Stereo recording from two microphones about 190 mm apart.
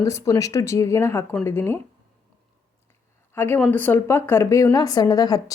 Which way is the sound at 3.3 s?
10° left (ahead or behind).